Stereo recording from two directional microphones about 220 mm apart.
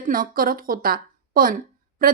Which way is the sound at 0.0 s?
40° right (ahead or behind).